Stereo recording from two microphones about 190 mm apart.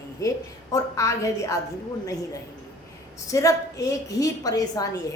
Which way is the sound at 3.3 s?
15° left (ahead or behind).